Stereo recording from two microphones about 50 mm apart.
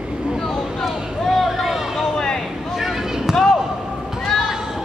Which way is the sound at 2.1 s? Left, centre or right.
Centre.